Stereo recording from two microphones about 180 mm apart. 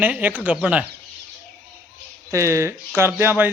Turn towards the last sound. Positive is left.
turn(degrees=-10)  # may be behind; listen again after turning